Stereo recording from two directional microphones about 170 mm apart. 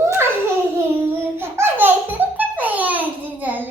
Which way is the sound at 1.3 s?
15° right (ahead or behind).